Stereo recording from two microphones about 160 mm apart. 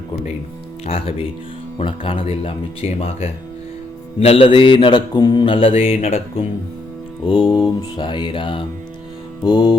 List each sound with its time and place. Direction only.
0.9 s mantra: 35° left (ahead or behind)
7.3 s mantra: 30° left (ahead or behind)
9.4 s music: 25° left (ahead or behind)